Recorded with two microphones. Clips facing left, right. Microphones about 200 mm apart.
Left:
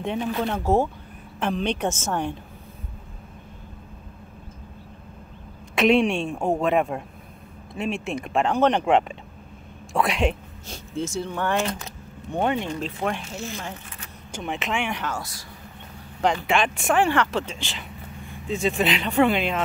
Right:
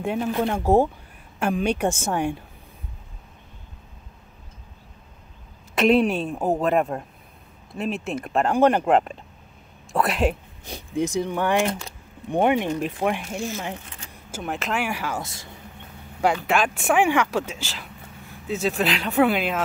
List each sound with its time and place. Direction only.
0.0 s speech: 5° right (ahead or behind)
5.8 s speech: centre (ahead or behind)
10.6 s speech: 15° right (ahead or behind)
13.6 s sewing machine: 25° right (ahead or behind)
14.3 s speech: centre (ahead or behind)
15.1 s speech: 25° right (ahead or behind)
16.2 s speech: 5° right (ahead or behind)